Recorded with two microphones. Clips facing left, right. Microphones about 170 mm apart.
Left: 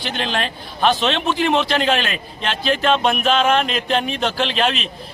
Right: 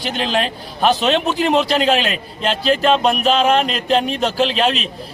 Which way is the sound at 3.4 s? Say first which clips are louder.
Right 2 dB; centre (ahead or behind).